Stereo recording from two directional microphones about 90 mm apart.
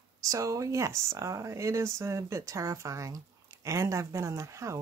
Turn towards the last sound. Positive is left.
turn(degrees=-35)  # may be behind; listen again after turning